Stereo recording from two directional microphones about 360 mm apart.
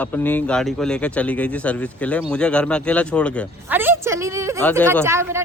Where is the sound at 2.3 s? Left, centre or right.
Centre.